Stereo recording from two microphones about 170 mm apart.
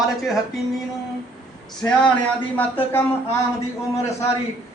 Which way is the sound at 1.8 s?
15° left (ahead or behind).